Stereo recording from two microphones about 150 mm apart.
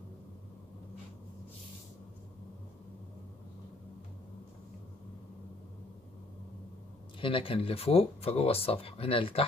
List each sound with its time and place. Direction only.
7.2 s speech: 35° left (ahead or behind)